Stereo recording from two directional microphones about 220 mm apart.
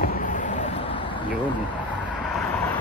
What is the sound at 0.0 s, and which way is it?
Vehicle, 35° left (ahead or behind).